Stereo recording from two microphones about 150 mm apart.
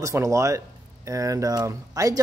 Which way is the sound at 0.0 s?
20° right (ahead or behind).